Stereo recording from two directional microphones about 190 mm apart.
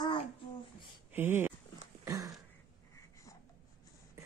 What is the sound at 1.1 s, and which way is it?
Speech, 10° right (ahead or behind).